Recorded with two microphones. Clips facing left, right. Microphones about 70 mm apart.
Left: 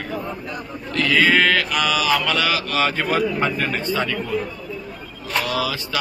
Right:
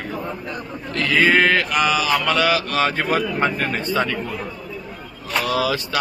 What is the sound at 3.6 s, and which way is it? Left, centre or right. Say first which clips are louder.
Mantra: right 1 dB; right.